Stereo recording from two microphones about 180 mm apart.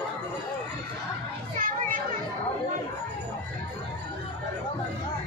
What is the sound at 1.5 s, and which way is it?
Children playing, 50° right (ahead or behind).